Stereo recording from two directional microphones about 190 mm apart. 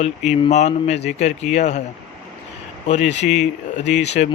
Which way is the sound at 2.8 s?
35° left (ahead or behind).